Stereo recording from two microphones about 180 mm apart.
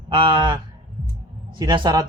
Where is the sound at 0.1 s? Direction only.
30° right (ahead or behind).